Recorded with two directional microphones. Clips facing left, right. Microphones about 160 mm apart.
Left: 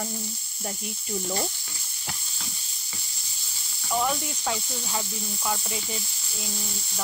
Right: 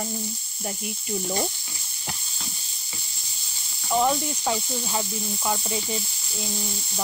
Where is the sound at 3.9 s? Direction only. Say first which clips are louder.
Right 4 dB; 20° right (ahead or behind).